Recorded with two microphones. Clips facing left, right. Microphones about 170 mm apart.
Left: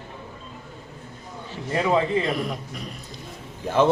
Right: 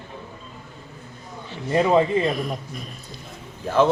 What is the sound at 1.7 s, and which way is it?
Speech, 20° right (ahead or behind).